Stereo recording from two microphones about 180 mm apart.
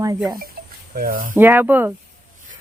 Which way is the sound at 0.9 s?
50° right (ahead or behind).